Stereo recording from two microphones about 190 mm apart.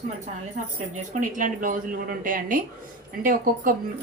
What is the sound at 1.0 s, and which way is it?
A woman's voice, 45° right (ahead or behind).